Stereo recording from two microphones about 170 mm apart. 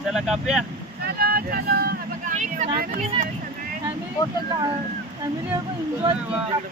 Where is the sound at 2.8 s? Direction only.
55° right (ahead or behind).